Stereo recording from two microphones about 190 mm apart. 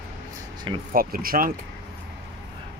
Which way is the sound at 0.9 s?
50° right (ahead or behind).